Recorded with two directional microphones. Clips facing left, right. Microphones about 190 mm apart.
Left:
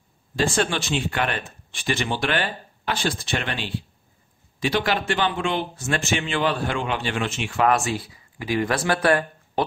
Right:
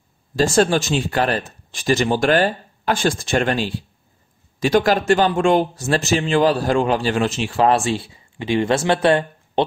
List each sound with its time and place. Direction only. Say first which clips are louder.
0.4 s speech: right 7 dB; 40° right (ahead or behind); by 9.7 s 25° right (ahead or behind)